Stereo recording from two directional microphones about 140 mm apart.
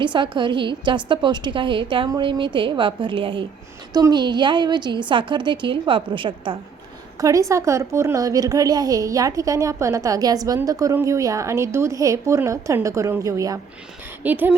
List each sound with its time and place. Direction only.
0.0 s a woman's voice: 35° right (ahead or behind)
7.2 s a woman's voice: 25° right (ahead or behind)
14.3 s speech: 15° right (ahead or behind)